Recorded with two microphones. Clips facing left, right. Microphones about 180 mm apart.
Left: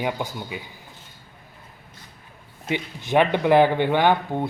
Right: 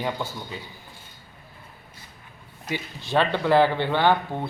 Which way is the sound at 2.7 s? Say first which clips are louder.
Left 4 dB; 20° left (ahead or behind).